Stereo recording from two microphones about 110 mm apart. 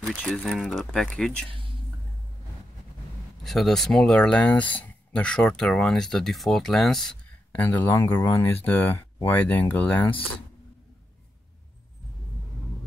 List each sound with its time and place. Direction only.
0.0 s speech: 5° left (ahead or behind)
3.4 s speech: centre (ahead or behind)
7.5 s speech: 15° left (ahead or behind)